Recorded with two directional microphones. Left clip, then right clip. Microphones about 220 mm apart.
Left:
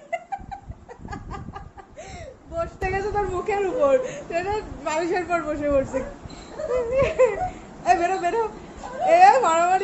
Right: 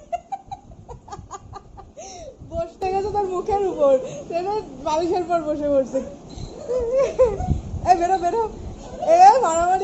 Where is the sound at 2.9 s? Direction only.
Centre (ahead or behind).